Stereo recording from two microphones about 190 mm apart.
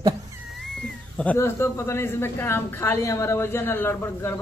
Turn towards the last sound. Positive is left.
turn(degrees=15)  # may be behind; listen again after turning